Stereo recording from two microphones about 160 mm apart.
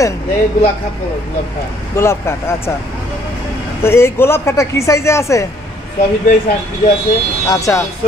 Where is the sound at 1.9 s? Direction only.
15° left (ahead or behind).